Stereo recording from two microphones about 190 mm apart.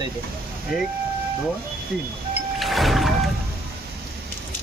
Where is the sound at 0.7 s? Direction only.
Centre (ahead or behind).